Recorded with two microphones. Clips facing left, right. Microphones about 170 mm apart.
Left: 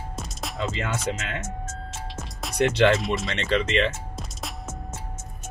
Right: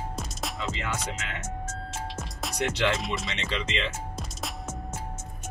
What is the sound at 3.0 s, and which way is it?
Music, centre (ahead or behind).